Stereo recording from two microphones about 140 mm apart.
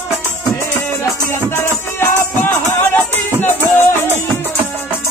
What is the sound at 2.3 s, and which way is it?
Music, 15° left (ahead or behind).